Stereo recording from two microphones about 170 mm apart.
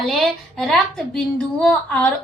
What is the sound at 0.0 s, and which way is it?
A woman's voice, centre (ahead or behind).